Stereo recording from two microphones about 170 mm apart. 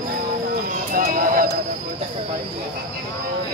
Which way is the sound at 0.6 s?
50° right (ahead or behind).